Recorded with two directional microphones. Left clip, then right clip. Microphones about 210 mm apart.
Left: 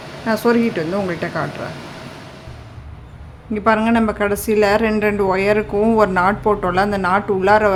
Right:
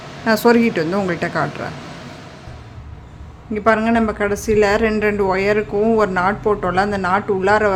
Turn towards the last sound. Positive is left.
turn(degrees=10)  # may be behind; listen again after turning